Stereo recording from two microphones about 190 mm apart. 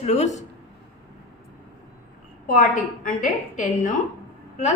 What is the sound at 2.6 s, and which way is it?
A woman's voice, 45° left (ahead or behind).